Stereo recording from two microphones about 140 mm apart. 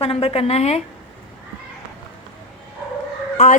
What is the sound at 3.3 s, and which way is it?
Chicken, 60° left (ahead or behind).